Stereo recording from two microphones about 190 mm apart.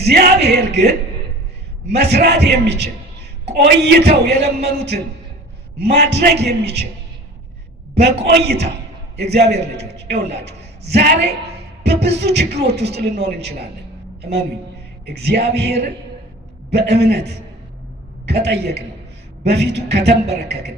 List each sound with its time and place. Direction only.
0.0 s a man's voice: 55° right (ahead or behind)
8.0 s a man's voice: 60° right (ahead or behind)
15.0 s a man's voice: 60° right (ahead or behind)
18.3 s a man's voice: 60° right (ahead or behind)